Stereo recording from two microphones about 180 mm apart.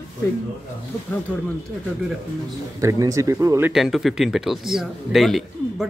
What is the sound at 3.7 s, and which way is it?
A man's voice, centre (ahead or behind).